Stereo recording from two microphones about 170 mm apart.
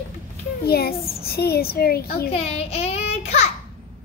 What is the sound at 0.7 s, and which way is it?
A child's voice, 65° left (ahead or behind).